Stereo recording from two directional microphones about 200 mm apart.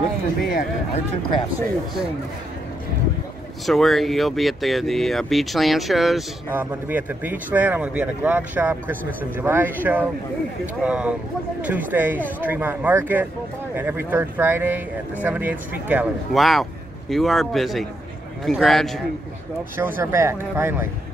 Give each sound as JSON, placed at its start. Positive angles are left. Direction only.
{"t": 0.5, "sound": "speech", "side_deg": 45}
{"t": 3.6, "sound": "speech", "side_deg": 0}
{"t": 19.8, "sound": "speech", "side_deg": -10}